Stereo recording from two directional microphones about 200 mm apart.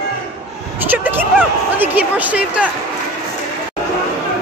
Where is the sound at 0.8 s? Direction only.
10° right (ahead or behind).